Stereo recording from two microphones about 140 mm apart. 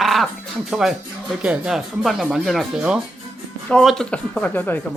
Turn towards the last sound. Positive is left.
turn(degrees=15)  # may be behind; listen again after turning